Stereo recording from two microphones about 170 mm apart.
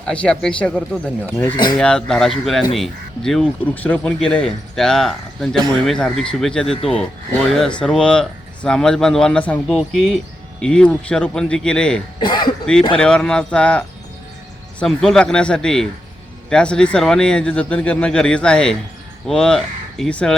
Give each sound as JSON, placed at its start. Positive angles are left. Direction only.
{"t": 0.1, "sound": "speech", "side_deg": 5}
{"t": 12.2, "sound": "speech", "side_deg": 25}
{"t": 13.0, "sound": "speech", "side_deg": 5}